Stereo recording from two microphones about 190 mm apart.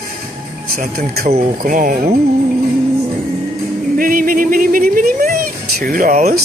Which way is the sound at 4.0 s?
50° right (ahead or behind).